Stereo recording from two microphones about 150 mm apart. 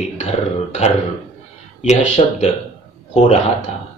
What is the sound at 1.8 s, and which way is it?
Speech, 50° left (ahead or behind).